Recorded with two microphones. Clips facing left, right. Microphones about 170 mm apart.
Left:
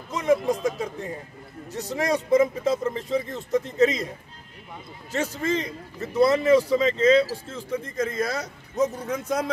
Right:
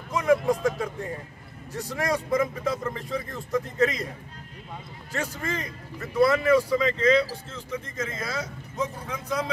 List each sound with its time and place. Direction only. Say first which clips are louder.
0.1 s a man's voice: even; 20° left (ahead or behind)
5.1 s a man's voice: left 5 dB; 20° left (ahead or behind); by 9.5 s 45° left (ahead or behind)